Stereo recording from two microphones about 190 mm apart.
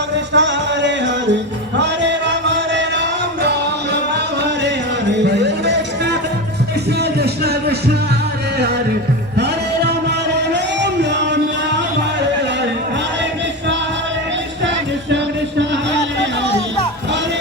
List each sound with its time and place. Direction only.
0.3 s music: 65° right (ahead or behind)
5.2 s music: 65° right (ahead or behind)
10.3 s music: 65° right (ahead or behind)